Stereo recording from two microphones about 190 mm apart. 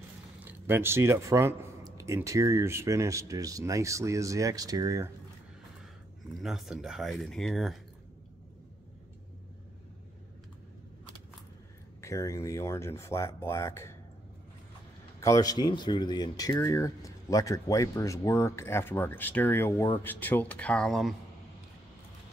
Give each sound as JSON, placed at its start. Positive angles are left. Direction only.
{"t": 0.4, "sound": "speech", "side_deg": -10}
{"t": 6.4, "sound": "speech", "side_deg": 0}
{"t": 12.0, "sound": "speech", "side_deg": 15}
{"t": 15.1, "sound": "speech", "side_deg": 15}